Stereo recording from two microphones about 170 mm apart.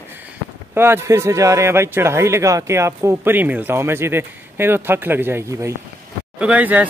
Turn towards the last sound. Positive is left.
turn(degrees=-10)  # may be behind; listen again after turning